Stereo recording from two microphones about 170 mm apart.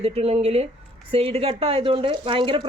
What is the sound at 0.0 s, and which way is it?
Speech, 35° right (ahead or behind).